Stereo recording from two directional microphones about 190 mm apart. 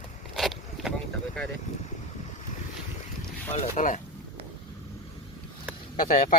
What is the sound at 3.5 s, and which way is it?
Speech, 40° left (ahead or behind).